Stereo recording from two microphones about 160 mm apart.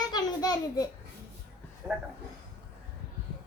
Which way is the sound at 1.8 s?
5° right (ahead or behind).